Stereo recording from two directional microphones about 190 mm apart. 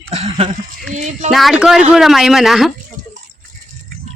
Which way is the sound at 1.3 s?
Centre (ahead or behind).